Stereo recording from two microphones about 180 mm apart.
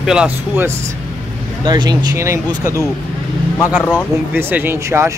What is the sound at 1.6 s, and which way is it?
Speech, 25° right (ahead or behind).